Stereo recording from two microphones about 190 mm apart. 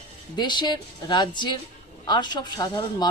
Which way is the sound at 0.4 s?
25° left (ahead or behind).